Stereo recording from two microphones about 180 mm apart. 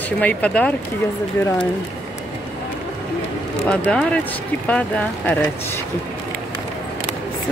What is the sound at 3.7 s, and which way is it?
A woman's voice, 5° left (ahead or behind).